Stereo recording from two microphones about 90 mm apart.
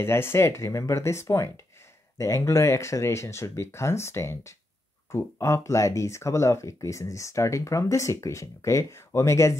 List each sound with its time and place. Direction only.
0.0 s speech: 25° left (ahead or behind)